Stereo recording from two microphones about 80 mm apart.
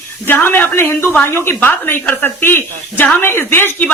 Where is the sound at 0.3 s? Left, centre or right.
Left.